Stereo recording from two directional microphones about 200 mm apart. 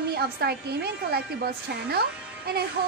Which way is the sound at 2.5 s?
50° right (ahead or behind).